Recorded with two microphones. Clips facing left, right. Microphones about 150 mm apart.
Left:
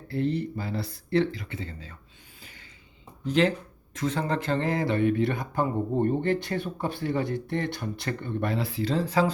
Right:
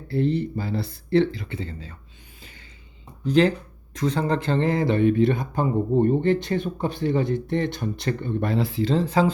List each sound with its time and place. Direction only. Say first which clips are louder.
0.1 s speech: right 4 dB; 30° right (ahead or behind)
2.4 s a sound: right 3 dB; 25° right (ahead or behind)
3.2 s speech: right 4 dB; 35° right (ahead or behind)